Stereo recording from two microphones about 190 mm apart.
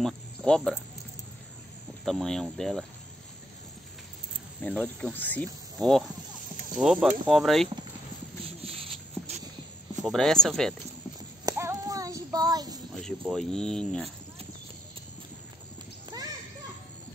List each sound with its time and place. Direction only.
0.0 s speech: centre (ahead or behind)
2.0 s speech: centre (ahead or behind)
4.6 s speech: 10° left (ahead or behind)
8.5 s a sound: 30° right (ahead or behind)
10.0 s speech: centre (ahead or behind)
11.4 s child singing: 15° right (ahead or behind)
13.3 s speech: 5° left (ahead or behind)